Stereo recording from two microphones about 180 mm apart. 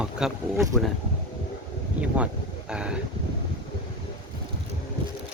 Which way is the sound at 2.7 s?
5° right (ahead or behind).